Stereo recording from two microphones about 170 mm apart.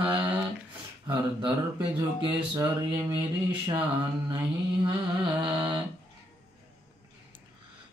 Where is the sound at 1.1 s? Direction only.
30° right (ahead or behind).